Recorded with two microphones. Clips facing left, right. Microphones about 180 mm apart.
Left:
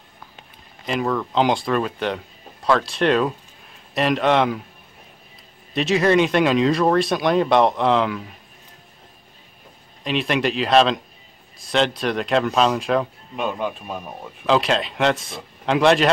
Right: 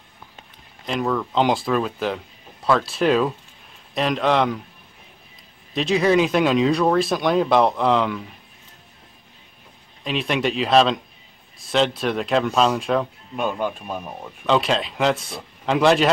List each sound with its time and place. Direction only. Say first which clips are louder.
0.8 s speech: even; centre (ahead or behind)
5.7 s speech: left 1 dB; centre (ahead or behind)
10.0 s speech: left 1 dB; centre (ahead or behind)